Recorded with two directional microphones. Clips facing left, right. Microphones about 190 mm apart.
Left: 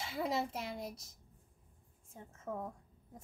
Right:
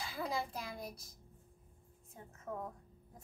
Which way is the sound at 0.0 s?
25° left (ahead or behind).